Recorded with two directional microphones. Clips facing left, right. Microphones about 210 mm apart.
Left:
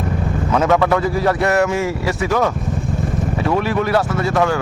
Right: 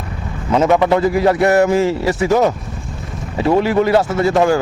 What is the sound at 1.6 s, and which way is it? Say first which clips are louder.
Speech: right 4 dB; 30° right (ahead or behind).